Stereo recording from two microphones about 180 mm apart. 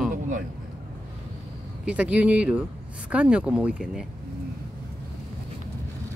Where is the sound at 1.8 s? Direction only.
5° right (ahead or behind).